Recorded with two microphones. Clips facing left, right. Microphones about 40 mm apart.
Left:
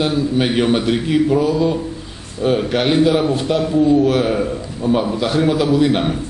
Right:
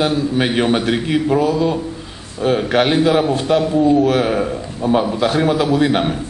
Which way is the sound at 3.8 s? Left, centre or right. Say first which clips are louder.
Left 2 dB; right.